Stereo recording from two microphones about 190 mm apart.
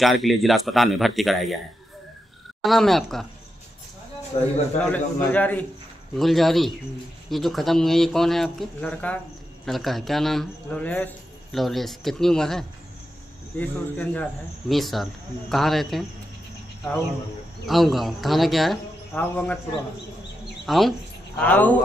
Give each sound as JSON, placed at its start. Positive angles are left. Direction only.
{"t": 0.0, "sound": "speech", "side_deg": 0}
{"t": 2.6, "sound": "speech", "side_deg": 0}
{"t": 4.3, "sound": "a man's voice", "side_deg": 25}
{"t": 4.7, "sound": "a man's voice", "side_deg": 10}
{"t": 17.6, "sound": "speech", "side_deg": 0}
{"t": 20.6, "sound": "a man's voice", "side_deg": 0}